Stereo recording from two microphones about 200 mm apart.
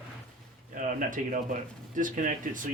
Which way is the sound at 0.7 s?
40° right (ahead or behind).